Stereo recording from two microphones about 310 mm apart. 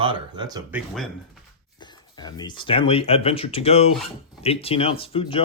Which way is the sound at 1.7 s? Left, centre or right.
Centre.